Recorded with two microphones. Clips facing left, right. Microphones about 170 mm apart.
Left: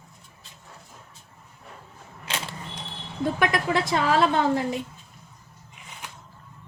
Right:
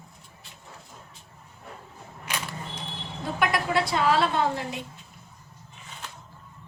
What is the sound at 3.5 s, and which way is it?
Speech, 45° left (ahead or behind).